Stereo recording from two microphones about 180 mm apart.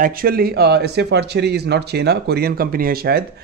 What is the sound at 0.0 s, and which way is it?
Speech, 55° right (ahead or behind).